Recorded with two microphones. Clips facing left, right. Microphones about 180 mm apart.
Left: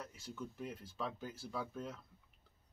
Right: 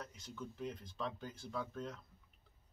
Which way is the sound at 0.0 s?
5° left (ahead or behind).